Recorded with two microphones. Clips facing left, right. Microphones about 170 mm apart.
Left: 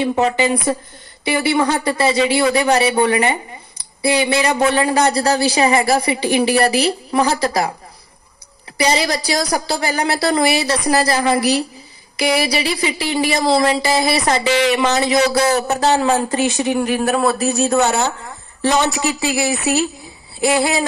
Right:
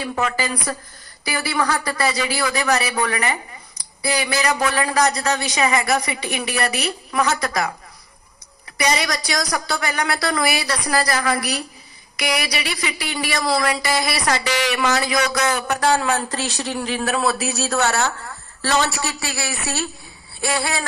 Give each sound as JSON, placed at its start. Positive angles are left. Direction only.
{"t": 0.0, "sound": "speech", "side_deg": 25}
{"t": 8.7, "sound": "speech", "side_deg": 30}
{"t": 16.4, "sound": "speech", "side_deg": 15}